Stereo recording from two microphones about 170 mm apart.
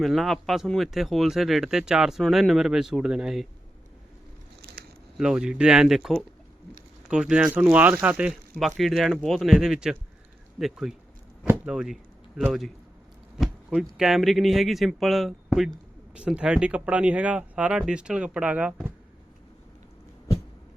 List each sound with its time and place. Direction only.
0.0 s speech: centre (ahead or behind)
4.6 s a sound: 65° right (ahead or behind)
5.1 s speech: 5° right (ahead or behind)